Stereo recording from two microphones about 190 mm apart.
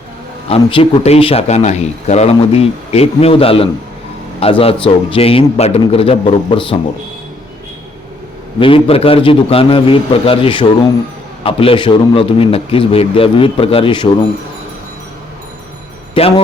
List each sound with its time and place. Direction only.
0.4 s speech: 30° left (ahead or behind)
8.5 s a man's voice: 30° left (ahead or behind)
16.2 s a man's voice: 30° left (ahead or behind)